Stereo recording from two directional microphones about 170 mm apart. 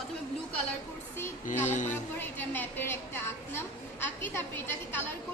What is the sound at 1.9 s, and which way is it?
A woman's voice, 10° left (ahead or behind).